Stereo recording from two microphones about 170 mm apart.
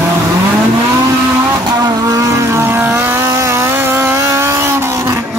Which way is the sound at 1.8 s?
20° right (ahead or behind).